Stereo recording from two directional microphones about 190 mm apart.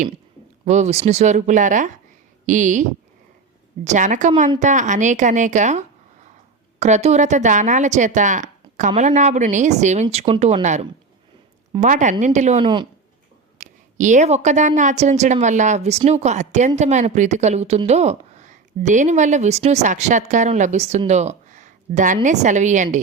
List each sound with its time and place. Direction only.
0.6 s a woman's voice: 35° right (ahead or behind)
3.8 s a woman's voice: 40° right (ahead or behind)
12.6 s speech: 25° right (ahead or behind)
13.6 s a woman's voice: 40° right (ahead or behind)